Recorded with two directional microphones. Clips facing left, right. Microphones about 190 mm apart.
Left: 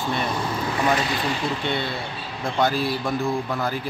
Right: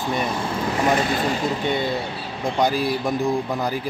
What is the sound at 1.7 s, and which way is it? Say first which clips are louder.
A man's voice: right 4 dB; 15° right (ahead or behind).